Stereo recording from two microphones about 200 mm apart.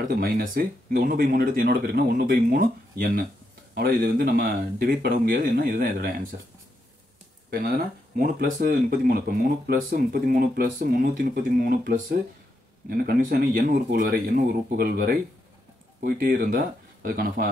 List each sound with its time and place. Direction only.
0.0 s speech: 45° right (ahead or behind)
8.2 s speech: 45° right (ahead or behind)